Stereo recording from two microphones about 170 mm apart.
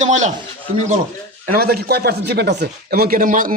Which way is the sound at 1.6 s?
65° right (ahead or behind).